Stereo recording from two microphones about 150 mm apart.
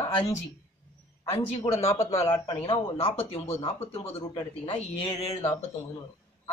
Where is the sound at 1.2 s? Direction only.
40° left (ahead or behind).